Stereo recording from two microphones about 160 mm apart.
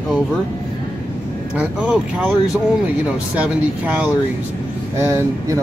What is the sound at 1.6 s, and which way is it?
Speech, 5° right (ahead or behind).